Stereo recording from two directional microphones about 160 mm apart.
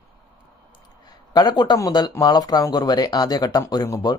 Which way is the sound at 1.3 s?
25° left (ahead or behind).